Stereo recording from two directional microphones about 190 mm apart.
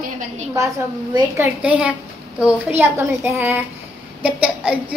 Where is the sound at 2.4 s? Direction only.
10° right (ahead or behind).